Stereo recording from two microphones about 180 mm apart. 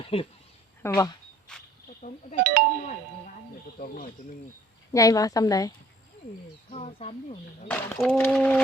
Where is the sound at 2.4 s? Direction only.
55° right (ahead or behind).